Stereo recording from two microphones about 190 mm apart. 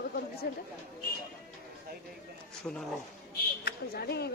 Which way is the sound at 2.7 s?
10° left (ahead or behind).